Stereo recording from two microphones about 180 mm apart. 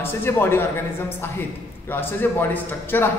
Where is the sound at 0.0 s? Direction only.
10° left (ahead or behind).